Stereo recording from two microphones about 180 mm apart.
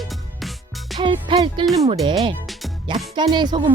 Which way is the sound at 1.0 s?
25° right (ahead or behind).